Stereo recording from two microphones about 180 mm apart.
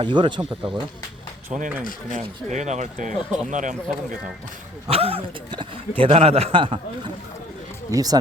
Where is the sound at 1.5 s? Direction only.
40° right (ahead or behind).